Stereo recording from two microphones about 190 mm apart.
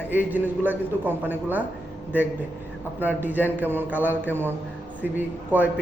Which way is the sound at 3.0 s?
10° right (ahead or behind).